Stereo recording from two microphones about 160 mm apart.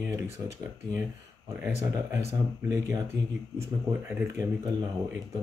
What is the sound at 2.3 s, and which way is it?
Speech, 20° right (ahead or behind).